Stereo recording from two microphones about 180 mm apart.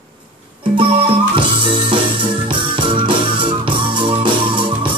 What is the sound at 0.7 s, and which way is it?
Music, 30° right (ahead or behind).